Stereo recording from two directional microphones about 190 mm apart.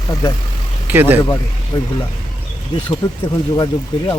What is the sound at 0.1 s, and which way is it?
Speech, 20° left (ahead or behind).